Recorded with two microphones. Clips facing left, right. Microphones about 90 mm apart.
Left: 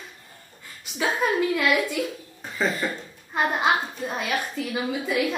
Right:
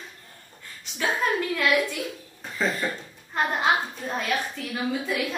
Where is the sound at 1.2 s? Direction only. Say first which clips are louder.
Left 2 dB; 10° left (ahead or behind).